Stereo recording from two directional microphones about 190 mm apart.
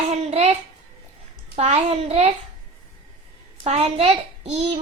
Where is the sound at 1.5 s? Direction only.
35° right (ahead or behind).